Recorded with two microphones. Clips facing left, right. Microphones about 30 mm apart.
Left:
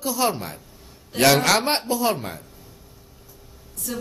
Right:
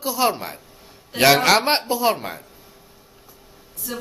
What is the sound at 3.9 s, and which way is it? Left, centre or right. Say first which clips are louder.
Speech: even; centre.